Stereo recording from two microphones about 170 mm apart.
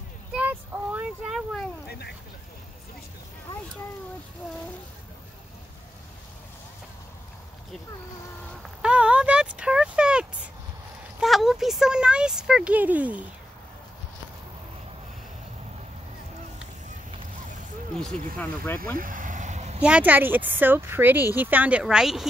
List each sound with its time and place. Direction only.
0.3 s child singing: 10° right (ahead or behind)
1.9 s speech: 70° left (ahead or behind)
8.6 s a sound: 5° right (ahead or behind)
11.1 s speech: centre (ahead or behind)
18.0 s speech: 10° left (ahead or behind)
18.9 s a sound: 50° right (ahead or behind)
19.8 s a woman's voice: 10° right (ahead or behind)